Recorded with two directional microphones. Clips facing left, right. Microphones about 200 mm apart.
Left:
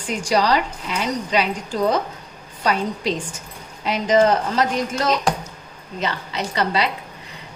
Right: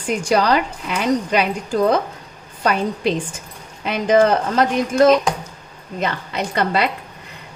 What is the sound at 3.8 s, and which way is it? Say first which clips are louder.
Speech: right 2 dB; 55° right (ahead or behind).